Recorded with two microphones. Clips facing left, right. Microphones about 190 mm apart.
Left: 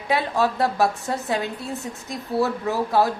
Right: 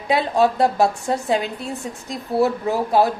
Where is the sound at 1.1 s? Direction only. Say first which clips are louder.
Right 4 dB; 15° right (ahead or behind).